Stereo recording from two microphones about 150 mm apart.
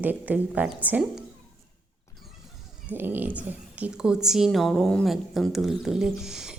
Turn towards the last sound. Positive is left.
turn(degrees=-5)  # may be behind; listen again after turning